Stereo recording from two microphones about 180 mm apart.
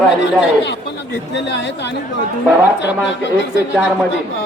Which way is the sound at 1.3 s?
75° left (ahead or behind).